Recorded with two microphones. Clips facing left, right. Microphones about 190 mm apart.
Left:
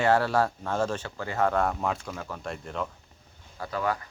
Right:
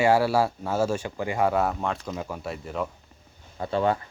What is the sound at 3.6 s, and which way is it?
Speech, 25° right (ahead or behind).